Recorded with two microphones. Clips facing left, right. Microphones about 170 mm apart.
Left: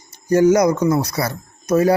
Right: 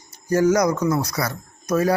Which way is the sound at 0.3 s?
25° left (ahead or behind).